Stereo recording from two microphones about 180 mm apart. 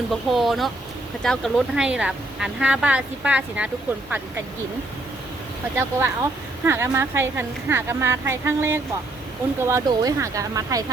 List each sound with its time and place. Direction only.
0.1 s speech: centre (ahead or behind)
5.7 s a woman's voice: 15° right (ahead or behind)